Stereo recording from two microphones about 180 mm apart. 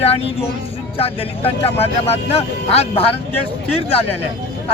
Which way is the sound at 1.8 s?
35° left (ahead or behind).